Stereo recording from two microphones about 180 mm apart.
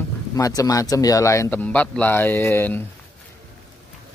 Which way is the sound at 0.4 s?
20° left (ahead or behind).